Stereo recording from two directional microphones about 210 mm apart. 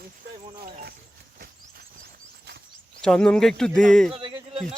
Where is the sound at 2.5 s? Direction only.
50° right (ahead or behind).